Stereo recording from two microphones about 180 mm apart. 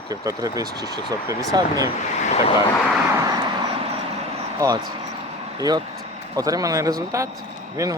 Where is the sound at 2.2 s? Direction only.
35° left (ahead or behind).